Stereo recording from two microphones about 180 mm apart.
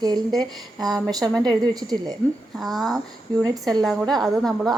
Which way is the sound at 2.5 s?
Centre (ahead or behind).